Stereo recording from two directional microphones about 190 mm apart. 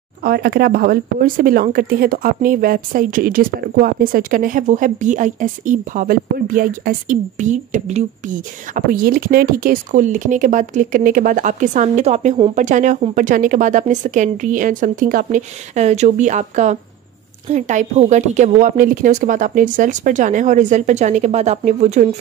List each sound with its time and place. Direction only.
0.2 s speech: 55° right (ahead or behind); by 22.0 s 35° right (ahead or behind)